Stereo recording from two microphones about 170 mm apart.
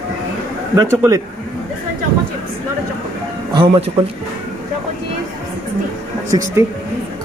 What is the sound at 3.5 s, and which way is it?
Speech, 35° right (ahead or behind).